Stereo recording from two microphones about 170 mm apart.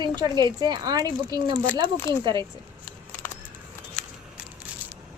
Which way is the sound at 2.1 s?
20° left (ahead or behind).